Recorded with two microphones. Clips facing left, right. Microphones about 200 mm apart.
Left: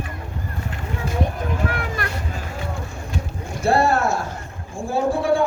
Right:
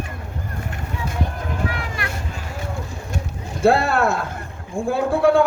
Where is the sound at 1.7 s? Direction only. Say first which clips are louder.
Left 2 dB; 45° left (ahead or behind).